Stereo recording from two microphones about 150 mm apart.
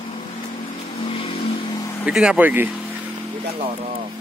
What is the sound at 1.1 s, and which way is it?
Vehicle, 40° left (ahead or behind).